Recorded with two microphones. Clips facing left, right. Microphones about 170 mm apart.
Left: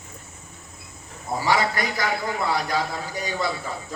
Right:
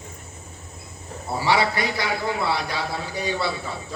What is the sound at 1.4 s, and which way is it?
A man's voice, 45° left (ahead or behind).